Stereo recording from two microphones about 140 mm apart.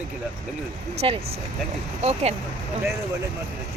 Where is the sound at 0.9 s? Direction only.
45° right (ahead or behind).